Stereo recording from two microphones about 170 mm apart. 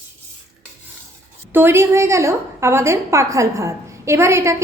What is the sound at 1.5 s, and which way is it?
A woman's voice, 15° right (ahead or behind).